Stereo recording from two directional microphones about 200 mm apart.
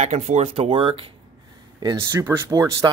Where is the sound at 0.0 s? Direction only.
35° right (ahead or behind).